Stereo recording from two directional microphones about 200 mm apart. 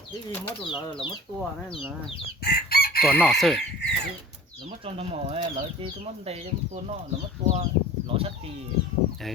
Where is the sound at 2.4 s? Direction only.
50° left (ahead or behind).